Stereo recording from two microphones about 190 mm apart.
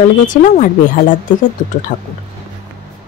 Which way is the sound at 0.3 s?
40° left (ahead or behind).